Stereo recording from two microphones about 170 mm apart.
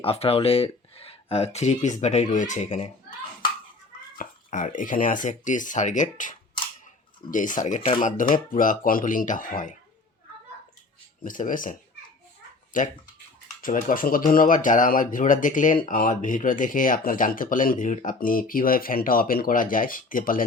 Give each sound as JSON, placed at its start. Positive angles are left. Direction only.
{"t": 0.0, "sound": "speech", "side_deg": 35}
{"t": 4.2, "sound": "speech", "side_deg": 50}
{"t": 11.2, "sound": "speech", "side_deg": 50}